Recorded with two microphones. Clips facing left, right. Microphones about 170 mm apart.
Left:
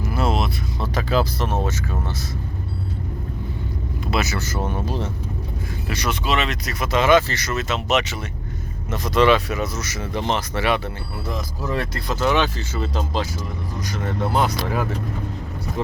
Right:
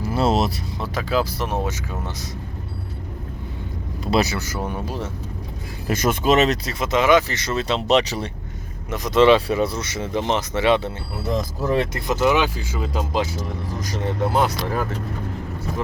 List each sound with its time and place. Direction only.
0.0 s vehicle: 35° right (ahead or behind)
0.8 s speech: 5° right (ahead or behind)
4.0 s speech: 35° right (ahead or behind)
4.4 s speech: 10° right (ahead or behind)
5.9 s speech: 45° right (ahead or behind)
6.7 s speech: 20° right (ahead or behind)
7.4 s speech: 30° right (ahead or behind)
8.9 s speech: 20° right (ahead or behind)